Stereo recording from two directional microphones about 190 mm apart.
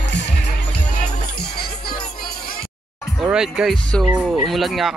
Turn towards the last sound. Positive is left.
turn(degrees=0)  # may be behind; listen again after turning